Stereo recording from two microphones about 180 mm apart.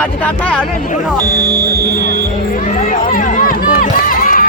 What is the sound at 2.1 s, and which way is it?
Run, 45° left (ahead or behind).